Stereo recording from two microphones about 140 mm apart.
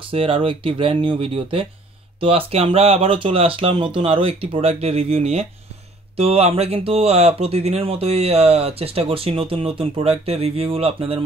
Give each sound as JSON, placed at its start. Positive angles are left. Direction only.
{"t": 0.1, "sound": "speech", "side_deg": -40}